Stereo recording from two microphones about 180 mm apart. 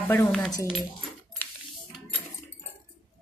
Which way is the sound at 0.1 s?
10° left (ahead or behind).